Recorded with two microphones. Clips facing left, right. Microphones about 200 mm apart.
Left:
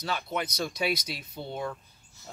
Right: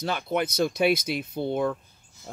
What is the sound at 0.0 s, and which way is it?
Speech, 55° right (ahead or behind).